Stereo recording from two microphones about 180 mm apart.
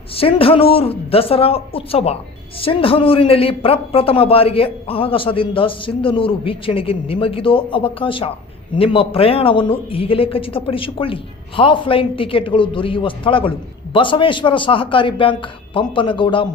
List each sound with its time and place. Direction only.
0.1 s a man's voice: 30° left (ahead or behind)